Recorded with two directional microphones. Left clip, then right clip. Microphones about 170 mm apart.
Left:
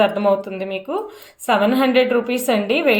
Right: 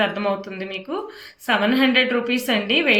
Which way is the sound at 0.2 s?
35° left (ahead or behind).